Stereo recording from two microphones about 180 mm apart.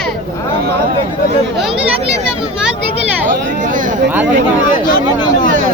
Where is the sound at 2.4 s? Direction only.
5° right (ahead or behind).